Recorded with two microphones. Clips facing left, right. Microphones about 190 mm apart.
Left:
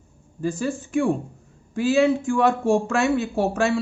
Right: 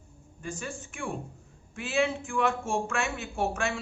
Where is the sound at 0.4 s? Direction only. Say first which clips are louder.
Left 12 dB; 35° left (ahead or behind).